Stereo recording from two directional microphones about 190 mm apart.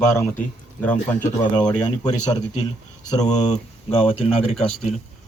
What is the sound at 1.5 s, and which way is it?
Speech, 20° left (ahead or behind).